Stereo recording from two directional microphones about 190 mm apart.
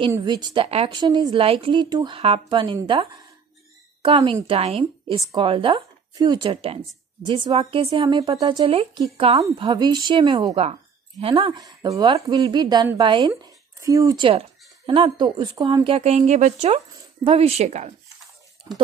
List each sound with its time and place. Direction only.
0.1 s speech: 20° right (ahead or behind)
18.7 s speech: 20° right (ahead or behind)